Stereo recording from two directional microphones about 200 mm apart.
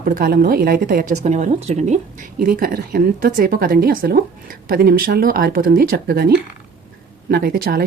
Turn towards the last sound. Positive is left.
turn(degrees=-50)  # may be behind; listen again after turning